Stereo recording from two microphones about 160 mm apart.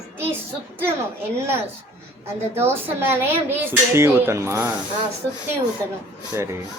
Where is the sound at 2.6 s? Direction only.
15° right (ahead or behind).